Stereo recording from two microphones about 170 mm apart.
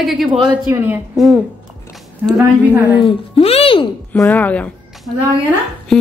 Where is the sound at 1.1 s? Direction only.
Centre (ahead or behind).